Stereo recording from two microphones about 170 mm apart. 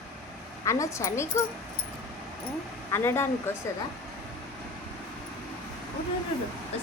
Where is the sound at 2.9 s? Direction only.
15° left (ahead or behind).